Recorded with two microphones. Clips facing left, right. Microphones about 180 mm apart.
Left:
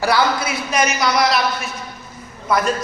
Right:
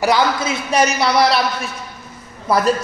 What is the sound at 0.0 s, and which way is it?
A man's voice, 20° right (ahead or behind).